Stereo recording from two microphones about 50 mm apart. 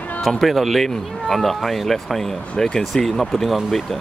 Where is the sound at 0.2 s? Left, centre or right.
Centre.